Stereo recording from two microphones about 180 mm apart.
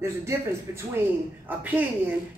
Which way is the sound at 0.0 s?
15° right (ahead or behind).